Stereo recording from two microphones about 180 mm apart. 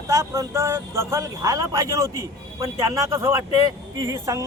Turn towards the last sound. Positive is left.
turn(degrees=-15)  # may be behind; listen again after turning